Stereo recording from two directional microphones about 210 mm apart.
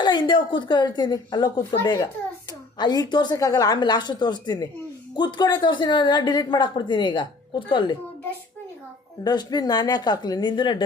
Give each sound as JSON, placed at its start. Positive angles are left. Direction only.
{"t": 0.0, "sound": "a woman's voice", "side_deg": 20}
{"t": 9.2, "sound": "a woman's voice", "side_deg": 20}